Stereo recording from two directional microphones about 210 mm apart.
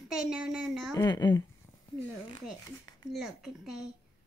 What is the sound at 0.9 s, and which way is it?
Speech, 20° left (ahead or behind).